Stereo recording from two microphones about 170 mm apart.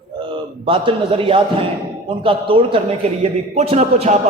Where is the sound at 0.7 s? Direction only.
30° right (ahead or behind).